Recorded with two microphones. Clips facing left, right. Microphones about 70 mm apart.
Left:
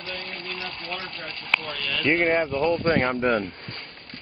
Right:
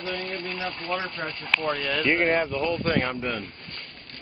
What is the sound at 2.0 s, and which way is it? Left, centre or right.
Speech, centre.